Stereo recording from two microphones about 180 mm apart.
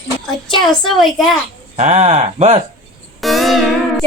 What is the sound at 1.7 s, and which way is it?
Speech, 35° right (ahead or behind).